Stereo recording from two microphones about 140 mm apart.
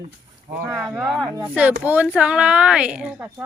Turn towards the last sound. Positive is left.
turn(degrees=-10)  # may be behind; listen again after turning